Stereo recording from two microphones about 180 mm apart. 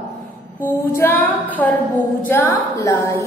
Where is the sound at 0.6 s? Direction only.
10° left (ahead or behind).